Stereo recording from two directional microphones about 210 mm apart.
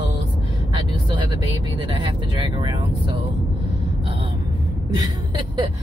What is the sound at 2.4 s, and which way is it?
Vehicle, 20° right (ahead or behind).